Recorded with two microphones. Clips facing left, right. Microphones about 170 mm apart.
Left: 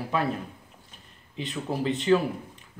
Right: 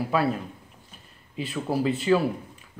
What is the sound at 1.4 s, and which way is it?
Speech, 10° right (ahead or behind).